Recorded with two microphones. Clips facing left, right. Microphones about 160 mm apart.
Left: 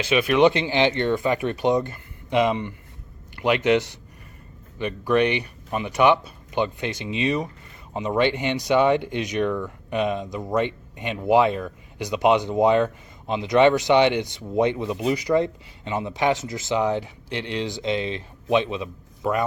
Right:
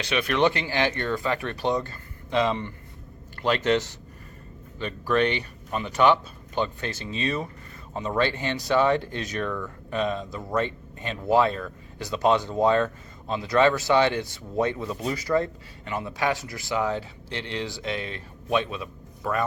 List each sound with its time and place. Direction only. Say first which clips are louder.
0.0 s speech: left 5 dB; 5° left (ahead or behind)